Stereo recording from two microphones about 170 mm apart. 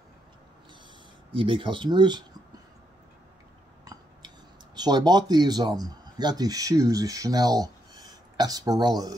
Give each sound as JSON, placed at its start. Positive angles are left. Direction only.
{"t": 1.3, "sound": "speech", "side_deg": -30}
{"t": 3.8, "sound": "a sound", "side_deg": -20}
{"t": 4.7, "sound": "speech", "side_deg": -25}